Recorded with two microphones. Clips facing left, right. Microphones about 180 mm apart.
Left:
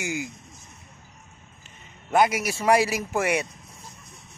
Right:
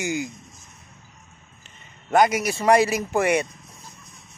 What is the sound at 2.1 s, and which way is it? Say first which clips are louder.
A man's voice: right 2 dB; 5° left (ahead or behind).